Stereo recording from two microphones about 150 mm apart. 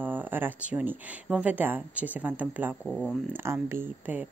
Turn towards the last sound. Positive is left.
turn(degrees=-10)  # may be behind; listen again after turning